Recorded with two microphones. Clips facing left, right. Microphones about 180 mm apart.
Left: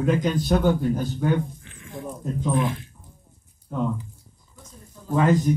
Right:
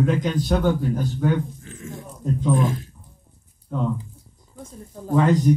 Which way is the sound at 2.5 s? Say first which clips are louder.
Right 3 dB; 45° right (ahead or behind).